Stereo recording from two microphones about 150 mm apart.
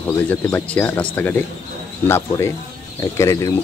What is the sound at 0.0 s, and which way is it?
Speech, 10° left (ahead or behind).